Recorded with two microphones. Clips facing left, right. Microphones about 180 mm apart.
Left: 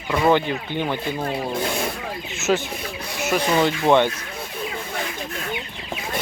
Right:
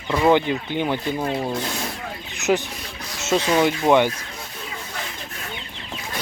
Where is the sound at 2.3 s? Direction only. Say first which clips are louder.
Right 1 dB; 15° right (ahead or behind).